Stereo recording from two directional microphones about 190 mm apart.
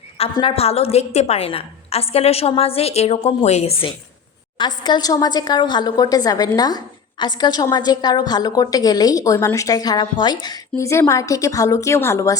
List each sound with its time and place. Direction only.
0.2 s a woman's voice: 30° left (ahead or behind); by 12.4 s 15° left (ahead or behind)